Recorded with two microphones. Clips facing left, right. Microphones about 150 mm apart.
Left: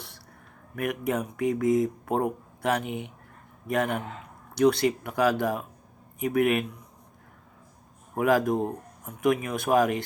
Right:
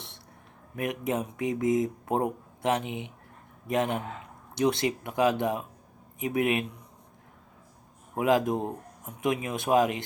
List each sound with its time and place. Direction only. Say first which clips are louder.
0.8 s speech: left 2 dB; 20° right (ahead or behind)
8.1 s speech: left 1 dB; 20° right (ahead or behind)